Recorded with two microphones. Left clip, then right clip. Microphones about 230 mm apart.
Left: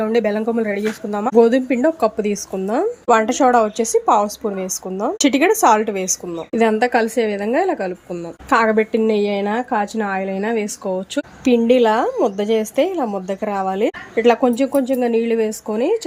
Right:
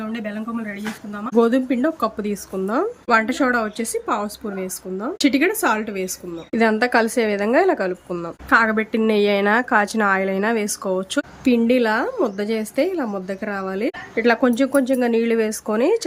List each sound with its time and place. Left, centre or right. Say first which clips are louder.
0.0 s speech: left 12 dB; centre
1.4 s speech: left 4 dB; centre
8.4 s speech: left 2 dB; centre